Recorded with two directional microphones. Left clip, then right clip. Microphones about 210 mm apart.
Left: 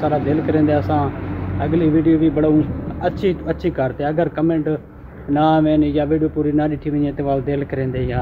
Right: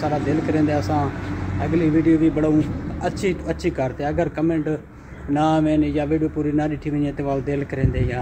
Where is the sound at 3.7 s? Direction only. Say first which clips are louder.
Left 3 dB; centre (ahead or behind).